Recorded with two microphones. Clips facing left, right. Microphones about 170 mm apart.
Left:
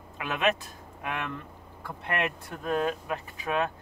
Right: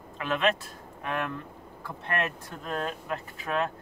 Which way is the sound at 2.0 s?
15° left (ahead or behind).